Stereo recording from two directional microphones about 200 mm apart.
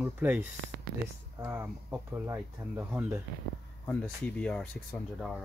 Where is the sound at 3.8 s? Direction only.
5° left (ahead or behind).